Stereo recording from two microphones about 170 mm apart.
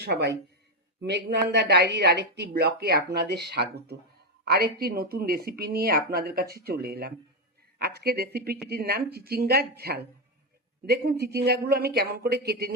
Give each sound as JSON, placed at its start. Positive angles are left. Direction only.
{"t": 0.0, "sound": "speech", "side_deg": -85}